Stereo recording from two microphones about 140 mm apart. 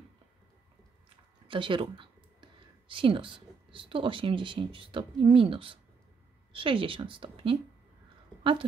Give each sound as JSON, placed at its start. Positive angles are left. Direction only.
{"t": 1.5, "sound": "speech", "side_deg": -35}